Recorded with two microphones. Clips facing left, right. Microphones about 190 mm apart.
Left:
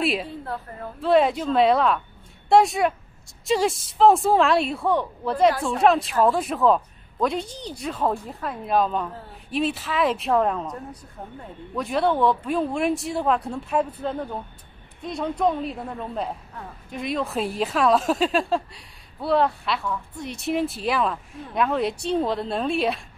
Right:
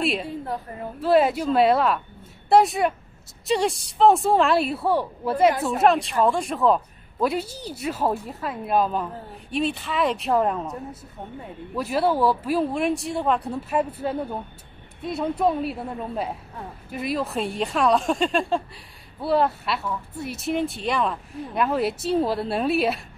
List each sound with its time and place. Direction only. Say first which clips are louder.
0.0 s speech: even; centre (ahead or behind)